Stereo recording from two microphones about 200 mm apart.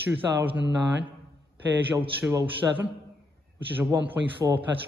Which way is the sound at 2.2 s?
10° right (ahead or behind).